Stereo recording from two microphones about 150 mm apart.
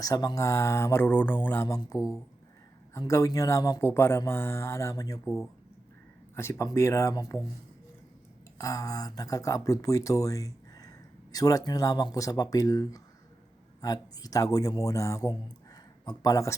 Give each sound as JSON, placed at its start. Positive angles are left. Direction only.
{"t": 0.0, "sound": "speech", "side_deg": 25}
{"t": 1.6, "sound": "speech", "side_deg": 25}
{"t": 6.3, "sound": "speech", "side_deg": 20}
{"t": 8.5, "sound": "speech", "side_deg": 25}